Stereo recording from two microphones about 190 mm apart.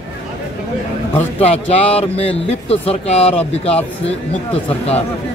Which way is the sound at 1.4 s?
30° left (ahead or behind).